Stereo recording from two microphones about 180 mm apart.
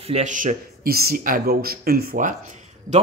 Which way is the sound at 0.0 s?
40° right (ahead or behind).